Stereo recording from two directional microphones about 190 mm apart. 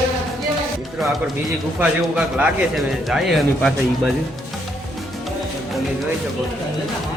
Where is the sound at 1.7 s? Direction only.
5° right (ahead or behind).